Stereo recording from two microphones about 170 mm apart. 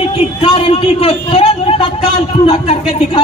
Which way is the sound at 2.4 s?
35° left (ahead or behind).